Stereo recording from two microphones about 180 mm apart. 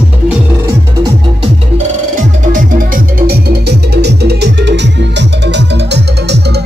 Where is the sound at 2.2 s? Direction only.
50° right (ahead or behind).